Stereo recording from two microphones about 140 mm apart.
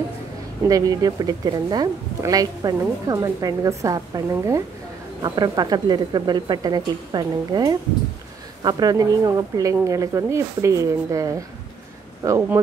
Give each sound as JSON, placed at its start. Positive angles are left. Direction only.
{"t": 0.7, "sound": "a woman's voice", "side_deg": -25}